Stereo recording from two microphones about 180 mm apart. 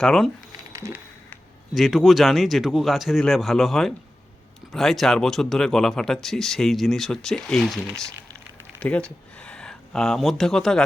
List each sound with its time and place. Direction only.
0.0 s speech: centre (ahead or behind)
0.7 s music: 20° right (ahead or behind)
1.7 s speech: centre (ahead or behind)